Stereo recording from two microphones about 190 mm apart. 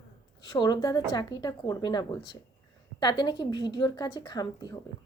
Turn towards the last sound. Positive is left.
turn(degrees=20)  # may be behind; listen again after turning